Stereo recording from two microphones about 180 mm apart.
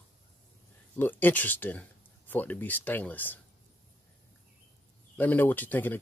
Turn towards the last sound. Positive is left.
turn(degrees=10)  # may be behind; listen again after turning